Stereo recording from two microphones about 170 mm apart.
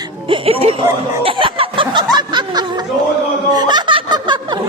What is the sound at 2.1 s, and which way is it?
Snicker, 25° right (ahead or behind).